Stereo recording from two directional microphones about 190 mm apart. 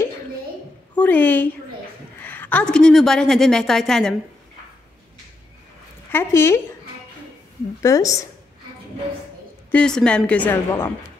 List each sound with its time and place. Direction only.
0.9 s a woman's voice: 10° left (ahead or behind)
6.1 s a woman's voice: 15° left (ahead or behind)
7.8 s a woman's voice: 15° left (ahead or behind)
9.7 s a woman's voice: 5° left (ahead or behind)